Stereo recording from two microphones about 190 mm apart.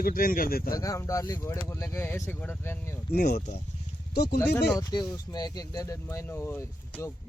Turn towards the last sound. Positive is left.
turn(degrees=10)  # may be behind; listen again after turning